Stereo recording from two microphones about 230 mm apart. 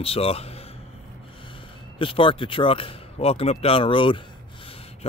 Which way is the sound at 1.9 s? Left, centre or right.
Left.